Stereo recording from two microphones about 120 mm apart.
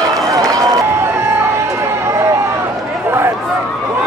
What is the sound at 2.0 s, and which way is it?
Run, 25° right (ahead or behind).